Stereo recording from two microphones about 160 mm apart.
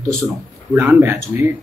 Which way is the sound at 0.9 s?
15° right (ahead or behind).